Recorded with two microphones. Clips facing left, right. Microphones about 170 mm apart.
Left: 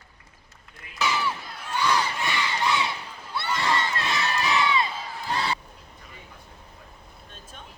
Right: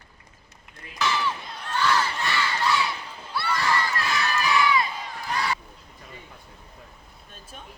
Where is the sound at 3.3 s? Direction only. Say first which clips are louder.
Right 1 dB; 20° left (ahead or behind).